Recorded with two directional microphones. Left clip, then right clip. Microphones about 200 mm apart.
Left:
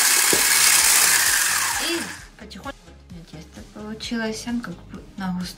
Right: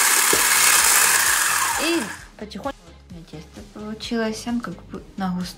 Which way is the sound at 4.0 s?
10° right (ahead or behind).